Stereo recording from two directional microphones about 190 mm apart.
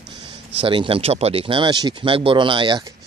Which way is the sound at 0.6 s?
30° right (ahead or behind).